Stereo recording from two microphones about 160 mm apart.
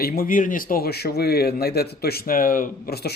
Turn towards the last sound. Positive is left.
turn(degrees=70)  # may be behind; listen again after turning